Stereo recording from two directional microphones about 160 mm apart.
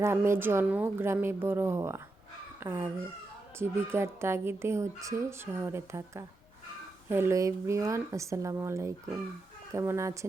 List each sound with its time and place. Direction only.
0.0 s speech: 15° right (ahead or behind)